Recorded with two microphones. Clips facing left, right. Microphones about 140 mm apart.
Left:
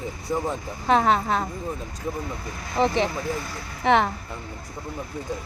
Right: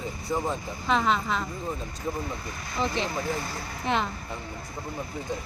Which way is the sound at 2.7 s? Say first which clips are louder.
Left 6 dB; 60° left (ahead or behind).